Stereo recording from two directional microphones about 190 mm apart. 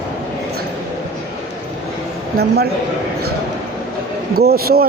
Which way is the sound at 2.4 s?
55° right (ahead or behind).